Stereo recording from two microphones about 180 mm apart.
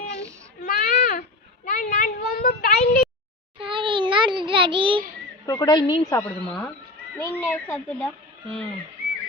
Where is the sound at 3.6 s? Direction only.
30° right (ahead or behind).